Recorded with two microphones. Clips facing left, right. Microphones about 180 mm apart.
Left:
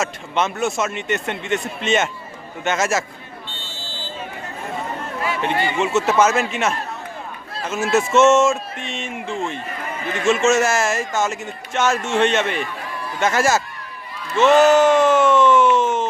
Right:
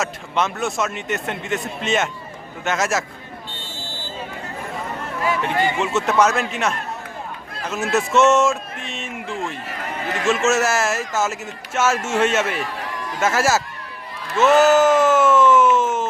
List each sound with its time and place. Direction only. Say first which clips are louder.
0.0 s speech: left 1 dB; centre (ahead or behind)
5.8 s speech: left 3 dB; 5° left (ahead or behind)
9.2 s a man's voice: left 2 dB; 30° left (ahead or behind)
10.2 s speech: left 2 dB; centre (ahead or behind)
14.3 s a sound: left 1 dB; 5° right (ahead or behind)